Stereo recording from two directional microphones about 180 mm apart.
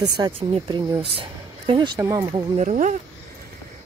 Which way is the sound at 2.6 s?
40° right (ahead or behind).